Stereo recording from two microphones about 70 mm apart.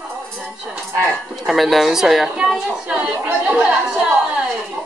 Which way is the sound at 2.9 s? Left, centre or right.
Centre.